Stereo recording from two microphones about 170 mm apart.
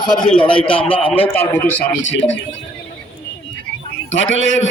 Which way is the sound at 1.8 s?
90° left.